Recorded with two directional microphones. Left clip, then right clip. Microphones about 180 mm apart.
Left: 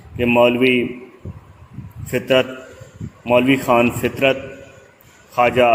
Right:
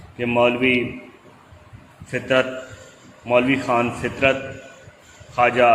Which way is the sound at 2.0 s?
50° left (ahead or behind).